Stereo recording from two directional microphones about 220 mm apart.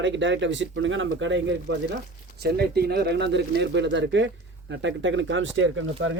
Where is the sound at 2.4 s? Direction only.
45° right (ahead or behind).